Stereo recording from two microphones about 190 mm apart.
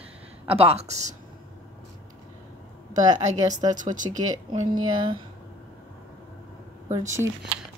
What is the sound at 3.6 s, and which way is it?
Speech, 40° right (ahead or behind).